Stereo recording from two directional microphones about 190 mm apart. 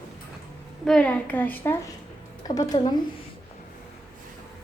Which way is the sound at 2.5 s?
20° left (ahead or behind).